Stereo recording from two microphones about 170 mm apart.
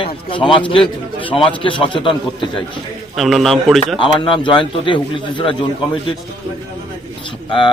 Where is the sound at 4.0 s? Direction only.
30° left (ahead or behind).